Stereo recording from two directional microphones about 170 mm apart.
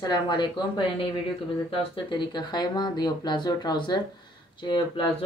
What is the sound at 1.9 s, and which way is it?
Speech, 25° left (ahead or behind).